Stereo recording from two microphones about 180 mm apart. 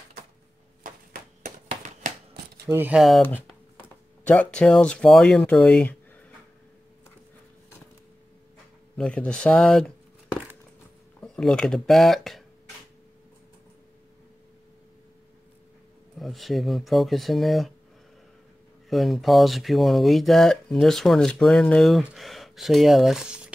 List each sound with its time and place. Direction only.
0.8 s chop: 50° right (ahead or behind)
2.6 s speech: 15° right (ahead or behind)
4.2 s speech: 10° left (ahead or behind)
8.9 s speech: 5° left (ahead or behind)
16.2 s speech: centre (ahead or behind)
18.9 s speech: centre (ahead or behind)